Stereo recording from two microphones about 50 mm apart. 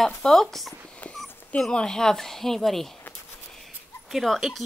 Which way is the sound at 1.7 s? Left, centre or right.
Centre.